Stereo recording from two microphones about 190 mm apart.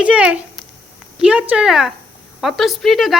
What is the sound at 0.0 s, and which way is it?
Speech, 5° right (ahead or behind).